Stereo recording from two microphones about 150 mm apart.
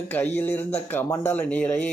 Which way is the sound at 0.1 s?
15° left (ahead or behind).